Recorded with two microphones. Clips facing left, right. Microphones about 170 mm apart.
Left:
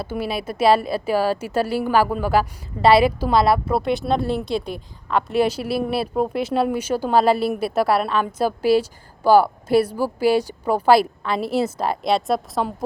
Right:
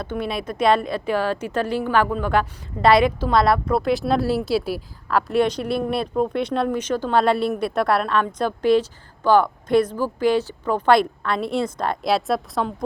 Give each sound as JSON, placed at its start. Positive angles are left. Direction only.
{"t": 0.0, "sound": "a woman's voice", "side_deg": 5}